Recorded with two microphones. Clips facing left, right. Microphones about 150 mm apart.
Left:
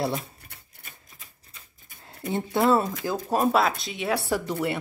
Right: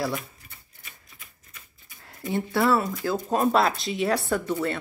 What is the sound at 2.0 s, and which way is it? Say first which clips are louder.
Speech: right 1 dB; 25° left (ahead or behind).